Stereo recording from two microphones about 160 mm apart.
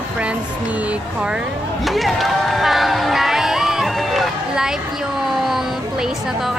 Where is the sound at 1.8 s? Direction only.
Centre (ahead or behind).